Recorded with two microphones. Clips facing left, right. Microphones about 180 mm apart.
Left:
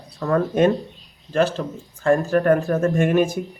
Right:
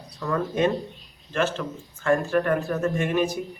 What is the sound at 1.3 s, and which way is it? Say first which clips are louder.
Speech: left 5 dB; 35° left (ahead or behind).